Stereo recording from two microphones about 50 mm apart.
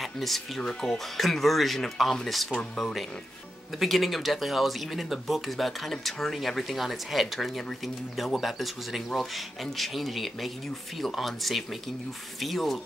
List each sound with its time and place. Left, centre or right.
0.0 s speech: centre
0.6 s speech: centre
0.8 s speech: centre